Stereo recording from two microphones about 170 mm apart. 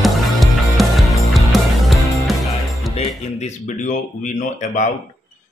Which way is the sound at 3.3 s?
45° left (ahead or behind).